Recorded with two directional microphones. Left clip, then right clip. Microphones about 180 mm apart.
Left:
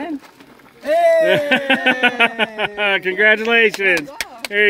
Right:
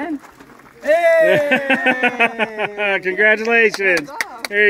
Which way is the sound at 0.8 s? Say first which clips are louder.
Even; 20° right (ahead or behind).